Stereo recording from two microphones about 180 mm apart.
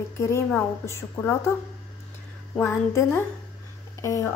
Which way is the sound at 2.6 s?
15° left (ahead or behind).